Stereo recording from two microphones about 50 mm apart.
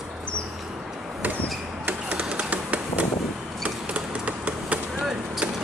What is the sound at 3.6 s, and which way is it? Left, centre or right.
Vehicle, right.